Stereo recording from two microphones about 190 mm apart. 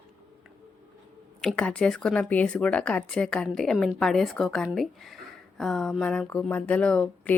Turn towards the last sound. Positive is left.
turn(degrees=5)  # may be behind; listen again after turning